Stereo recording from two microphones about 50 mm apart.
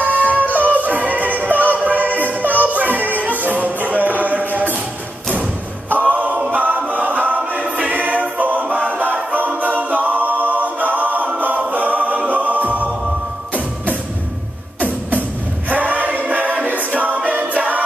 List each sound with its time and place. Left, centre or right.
0.0 s music: right
5.9 s choir: right
11.7 s music: right
15.7 s music: right